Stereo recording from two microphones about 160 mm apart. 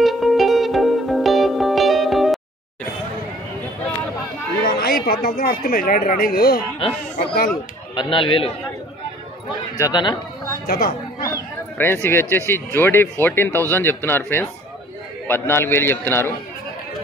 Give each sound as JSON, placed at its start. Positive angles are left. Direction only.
{"t": 0.0, "sound": "music", "side_deg": 0}
{"t": 4.6, "sound": "chatter", "side_deg": 70}
{"t": 5.0, "sound": "speech", "side_deg": 70}
{"t": 7.9, "sound": "a man's voice", "side_deg": 30}
{"t": 9.8, "sound": "speech", "side_deg": 25}
{"t": 10.7, "sound": "speech", "side_deg": 65}
{"t": 11.8, "sound": "speech", "side_deg": 15}